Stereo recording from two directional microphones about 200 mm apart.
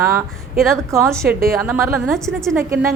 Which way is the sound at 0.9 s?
15° right (ahead or behind).